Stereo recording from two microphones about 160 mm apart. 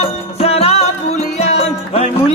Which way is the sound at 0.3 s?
40° left (ahead or behind).